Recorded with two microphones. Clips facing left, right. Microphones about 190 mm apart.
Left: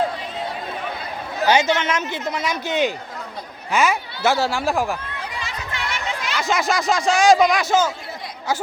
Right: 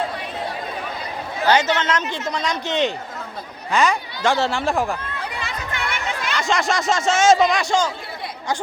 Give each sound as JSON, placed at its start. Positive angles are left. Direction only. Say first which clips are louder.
{"t": 1.5, "sound": "speech", "louder": "even", "side_deg": 10}
{"t": 5.4, "sound": "chatter", "louder": "right 1 dB", "side_deg": -55}
{"t": 6.3, "sound": "speech", "louder": "even", "side_deg": 0}